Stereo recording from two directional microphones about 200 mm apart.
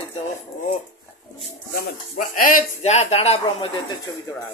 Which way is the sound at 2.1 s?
40° left (ahead or behind).